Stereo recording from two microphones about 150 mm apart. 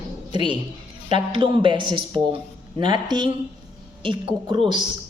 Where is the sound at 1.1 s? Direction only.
30° right (ahead or behind).